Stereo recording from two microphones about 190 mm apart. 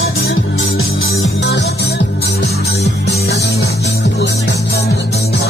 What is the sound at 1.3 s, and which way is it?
Music, 60° left (ahead or behind).